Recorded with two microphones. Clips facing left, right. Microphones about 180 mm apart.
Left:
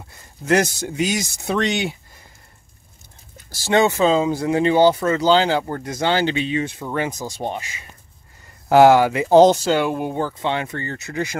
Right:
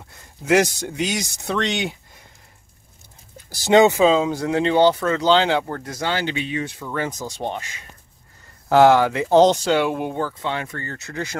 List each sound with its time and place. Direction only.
0.5 s speech: 5° left (ahead or behind)
3.4 s speech: 20° right (ahead or behind)
4.0 s speech: centre (ahead or behind)
5.7 s speech: 15° left (ahead or behind)
7.1 s speech: 10° left (ahead or behind)
10.1 s speech: 20° left (ahead or behind)